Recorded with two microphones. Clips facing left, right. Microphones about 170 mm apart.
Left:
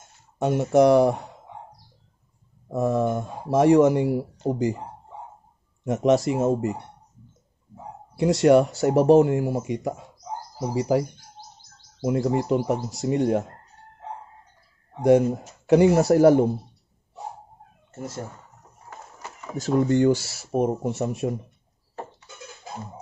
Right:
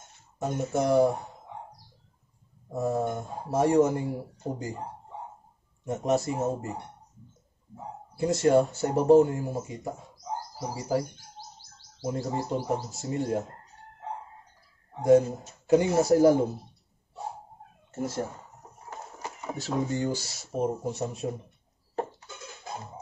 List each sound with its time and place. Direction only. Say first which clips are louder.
0.4 s speech: left 10 dB; 80° left
2.7 s speech: left 5 dB; 90° left
5.9 s speech: left 6 dB; 90° left
8.2 s speech: left 5 dB; 90° left
10.7 s speech: left 7 dB; 70° left (ahead or behind)
12.0 s speech: left 8 dB; 70° left (ahead or behind)
15.0 s speech: left 2 dB; 75° left (ahead or behind)
19.6 s speech: left 11 dB; 40° left (ahead or behind)
19.9 s speech: left 10 dB; 70° left (ahead or behind)